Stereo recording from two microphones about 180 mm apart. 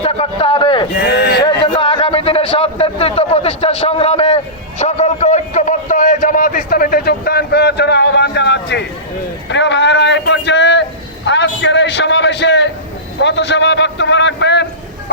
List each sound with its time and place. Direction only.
0.0 s a man's voice: 35° left (ahead or behind)
0.9 s speech: 70° left (ahead or behind)
1.6 s a man's voice: 30° left (ahead or behind); by 14.7 s 75° left (ahead or behind)